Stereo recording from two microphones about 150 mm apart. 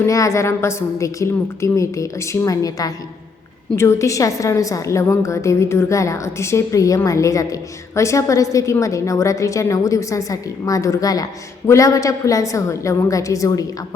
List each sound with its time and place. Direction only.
0.0 s a woman's voice: 20° left (ahead or behind)